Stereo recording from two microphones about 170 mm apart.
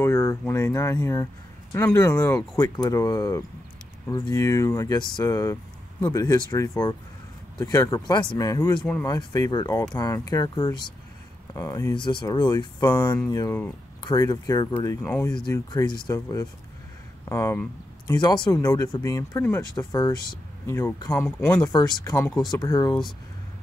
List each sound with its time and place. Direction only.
0.0 s speech: 15° left (ahead or behind)
8.7 s speech: 10° left (ahead or behind)
9.0 s speech: 20° left (ahead or behind)
15.0 s speech: 10° left (ahead or behind)
15.4 s speech: 25° left (ahead or behind)
17.2 s a sound: 15° left (ahead or behind)
18.1 s speech: 25° left (ahead or behind)